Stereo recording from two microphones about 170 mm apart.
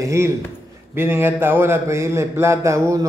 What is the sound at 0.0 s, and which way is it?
A man's voice, 15° right (ahead or behind).